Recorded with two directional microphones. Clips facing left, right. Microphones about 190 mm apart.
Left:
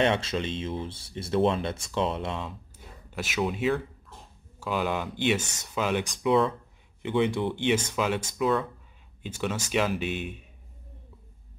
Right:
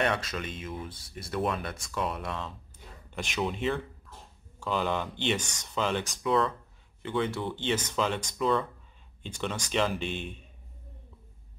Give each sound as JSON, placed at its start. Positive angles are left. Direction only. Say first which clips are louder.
{"t": 0.0, "sound": "speech", "louder": "left 4 dB", "side_deg": 25}
{"t": 3.1, "sound": "speech", "louder": "left 3 dB", "side_deg": 5}